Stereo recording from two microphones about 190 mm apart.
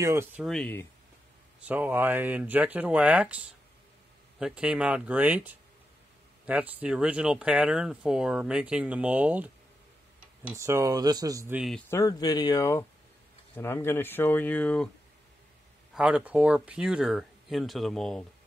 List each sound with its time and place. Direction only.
0.0 s speech: 15° right (ahead or behind)
0.4 s speech: 5° left (ahead or behind)
1.6 s speech: 10° right (ahead or behind)
6.4 s speech: 5° right (ahead or behind)
11.9 s speech: 20° left (ahead or behind)
15.9 s speech: 5° right (ahead or behind)